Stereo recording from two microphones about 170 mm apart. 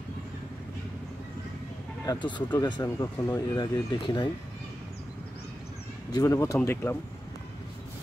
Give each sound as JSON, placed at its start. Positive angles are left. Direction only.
{"t": 2.0, "sound": "speech", "side_deg": 25}
{"t": 6.1, "sound": "speech", "side_deg": 20}